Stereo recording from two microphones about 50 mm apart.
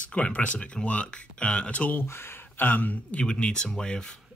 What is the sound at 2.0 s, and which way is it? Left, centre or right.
Speech, left.